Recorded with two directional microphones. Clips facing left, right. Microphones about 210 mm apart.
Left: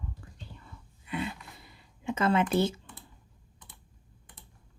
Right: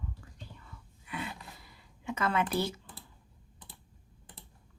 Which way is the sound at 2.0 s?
25° left (ahead or behind).